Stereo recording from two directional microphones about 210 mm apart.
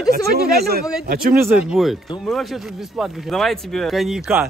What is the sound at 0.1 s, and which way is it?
Speech, 50° right (ahead or behind).